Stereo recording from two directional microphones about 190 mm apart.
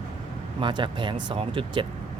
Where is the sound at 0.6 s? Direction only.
25° right (ahead or behind).